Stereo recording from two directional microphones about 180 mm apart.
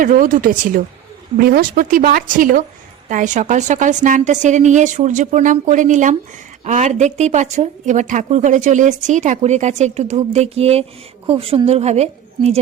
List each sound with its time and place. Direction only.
0.0 s a woman's voice: 50° right (ahead or behind)